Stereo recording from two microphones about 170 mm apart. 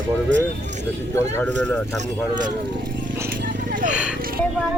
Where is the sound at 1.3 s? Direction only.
5° left (ahead or behind).